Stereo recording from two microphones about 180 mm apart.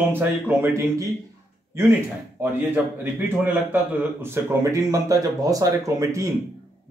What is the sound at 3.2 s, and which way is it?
A man's voice, 10° right (ahead or behind).